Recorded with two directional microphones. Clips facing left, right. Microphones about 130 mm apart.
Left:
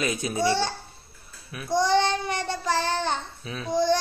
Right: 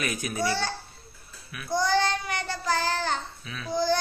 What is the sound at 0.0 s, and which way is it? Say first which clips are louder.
Speech: left 4 dB; 25° left (ahead or behind).